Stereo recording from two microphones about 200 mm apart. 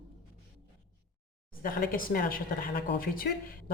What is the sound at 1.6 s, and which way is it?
A woman's voice, 45° left (ahead or behind).